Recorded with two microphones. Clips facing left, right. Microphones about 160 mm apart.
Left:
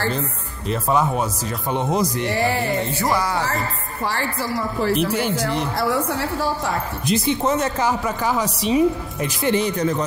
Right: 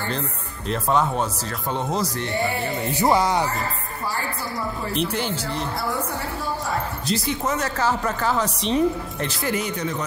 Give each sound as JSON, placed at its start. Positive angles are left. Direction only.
{"t": 0.7, "sound": "speech", "side_deg": 5}
{"t": 2.2, "sound": "a woman's voice", "side_deg": 90}
{"t": 2.9, "sound": "speech", "side_deg": -20}
{"t": 4.0, "sound": "a woman's voice", "side_deg": 90}
{"t": 4.9, "sound": "speech", "side_deg": 10}
{"t": 5.8, "sound": "a woman's voice", "side_deg": 90}
{"t": 7.1, "sound": "speech", "side_deg": 25}
{"t": 7.8, "sound": "speech", "side_deg": 10}
{"t": 9.4, "sound": "speech", "side_deg": 25}